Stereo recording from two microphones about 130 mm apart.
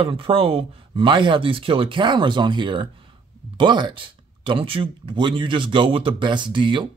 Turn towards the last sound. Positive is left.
turn(degrees=-40)  # may be behind; listen again after turning